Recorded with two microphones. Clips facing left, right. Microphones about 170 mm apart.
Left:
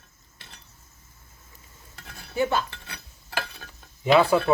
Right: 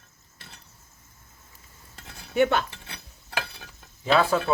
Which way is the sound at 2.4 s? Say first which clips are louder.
Right 3 dB; 70° right (ahead or behind).